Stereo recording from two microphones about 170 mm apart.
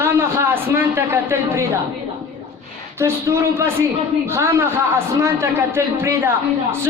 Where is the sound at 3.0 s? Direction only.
15° right (ahead or behind).